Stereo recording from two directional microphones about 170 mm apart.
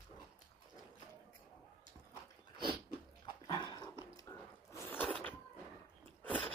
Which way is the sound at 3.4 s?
30° left (ahead or behind).